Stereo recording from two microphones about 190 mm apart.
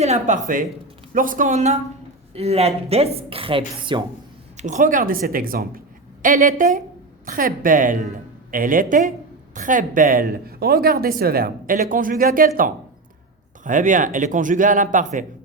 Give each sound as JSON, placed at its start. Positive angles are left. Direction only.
{"t": 0.0, "sound": "speech", "side_deg": -35}
{"t": 1.1, "sound": "speech", "side_deg": -45}
{"t": 4.5, "sound": "speech", "side_deg": -40}